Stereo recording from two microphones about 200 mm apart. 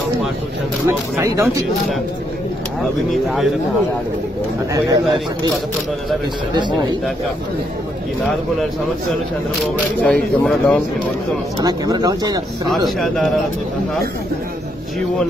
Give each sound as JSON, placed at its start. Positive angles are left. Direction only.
{"t": 0.8, "sound": "speech", "side_deg": -15}
{"t": 4.7, "sound": "speech", "side_deg": -20}
{"t": 6.5, "sound": "speech", "side_deg": -20}
{"t": 10.0, "sound": "speech", "side_deg": 5}
{"t": 11.6, "sound": "speech", "side_deg": -20}
{"t": 13.0, "sound": "a man's voice", "side_deg": 0}